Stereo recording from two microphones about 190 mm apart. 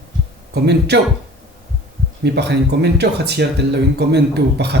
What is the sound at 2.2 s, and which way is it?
Speech, 60° right (ahead or behind).